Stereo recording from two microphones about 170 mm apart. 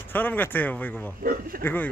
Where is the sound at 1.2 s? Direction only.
60° right (ahead or behind).